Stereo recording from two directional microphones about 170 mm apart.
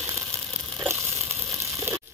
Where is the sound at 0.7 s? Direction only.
15° right (ahead or behind).